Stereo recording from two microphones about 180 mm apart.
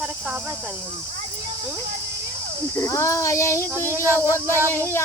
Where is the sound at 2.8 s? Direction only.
15° left (ahead or behind).